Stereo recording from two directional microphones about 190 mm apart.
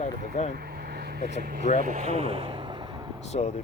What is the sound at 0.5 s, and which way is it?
Vehicle, 55° right (ahead or behind).